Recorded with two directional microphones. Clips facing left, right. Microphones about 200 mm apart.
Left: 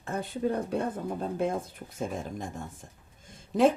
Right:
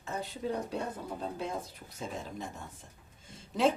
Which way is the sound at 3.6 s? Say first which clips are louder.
Left 5 dB; 50° left (ahead or behind).